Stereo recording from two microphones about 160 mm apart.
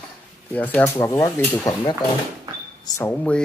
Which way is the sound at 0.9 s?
20° left (ahead or behind).